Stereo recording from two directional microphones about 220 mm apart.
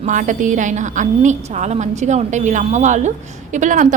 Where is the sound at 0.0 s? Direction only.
35° right (ahead or behind).